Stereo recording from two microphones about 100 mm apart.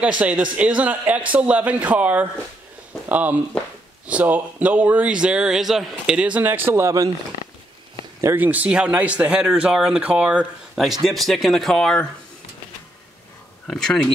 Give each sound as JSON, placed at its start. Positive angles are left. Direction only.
{"t": 0.2, "sound": "speech", "side_deg": -15}
{"t": 3.6, "sound": "speech", "side_deg": 10}
{"t": 4.1, "sound": "speech", "side_deg": -15}
{"t": 8.4, "sound": "speech", "side_deg": -15}
{"t": 13.7, "sound": "speech", "side_deg": 5}